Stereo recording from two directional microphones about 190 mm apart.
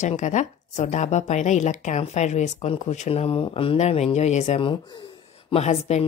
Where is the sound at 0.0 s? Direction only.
40° left (ahead or behind).